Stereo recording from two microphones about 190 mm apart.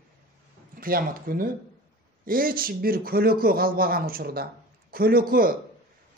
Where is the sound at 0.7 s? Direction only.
50° right (ahead or behind).